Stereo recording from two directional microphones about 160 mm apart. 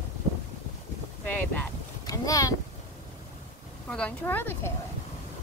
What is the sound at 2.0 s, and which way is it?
Boat, 20° left (ahead or behind).